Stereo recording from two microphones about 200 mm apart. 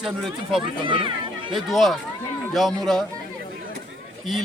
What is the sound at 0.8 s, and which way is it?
Speech, 25° right (ahead or behind).